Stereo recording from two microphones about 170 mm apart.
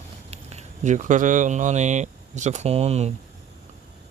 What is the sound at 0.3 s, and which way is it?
Speech, 40° right (ahead or behind).